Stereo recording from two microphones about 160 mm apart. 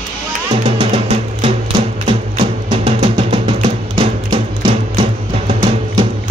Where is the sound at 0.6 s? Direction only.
35° right (ahead or behind).